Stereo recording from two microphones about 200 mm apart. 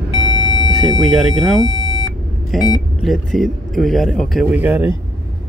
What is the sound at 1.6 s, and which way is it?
Beep, 25° left (ahead or behind).